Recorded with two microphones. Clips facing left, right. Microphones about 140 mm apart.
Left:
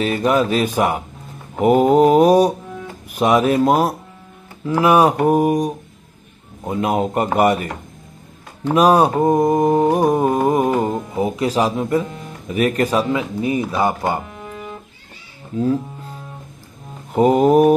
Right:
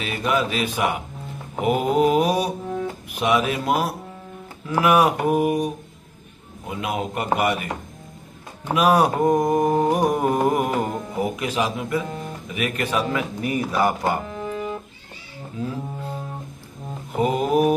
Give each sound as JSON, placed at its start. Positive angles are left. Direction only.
{"t": 0.0, "sound": "speech", "side_deg": 40}
{"t": 8.7, "sound": "mantra", "side_deg": 35}
{"t": 11.4, "sound": "speech", "side_deg": 35}
{"t": 13.1, "sound": "mantra", "side_deg": 25}
{"t": 17.2, "sound": "speech", "side_deg": 40}